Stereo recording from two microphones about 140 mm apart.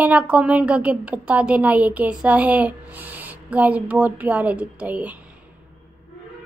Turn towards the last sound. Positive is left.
turn(degrees=-10)  # may be behind; listen again after turning